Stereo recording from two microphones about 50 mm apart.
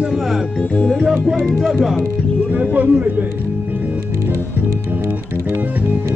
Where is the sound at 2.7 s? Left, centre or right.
Right.